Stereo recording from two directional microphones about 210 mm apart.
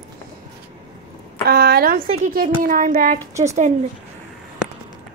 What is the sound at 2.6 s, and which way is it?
Child singing, 40° right (ahead or behind).